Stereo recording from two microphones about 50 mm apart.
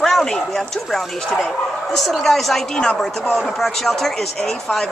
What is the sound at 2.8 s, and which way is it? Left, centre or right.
Speech, centre.